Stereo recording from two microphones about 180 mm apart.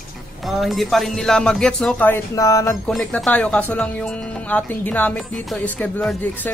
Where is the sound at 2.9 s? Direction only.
5° left (ahead or behind).